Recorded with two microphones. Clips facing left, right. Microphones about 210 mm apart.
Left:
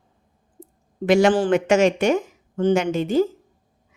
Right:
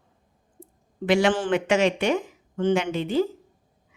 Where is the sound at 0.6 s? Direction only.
40° left (ahead or behind).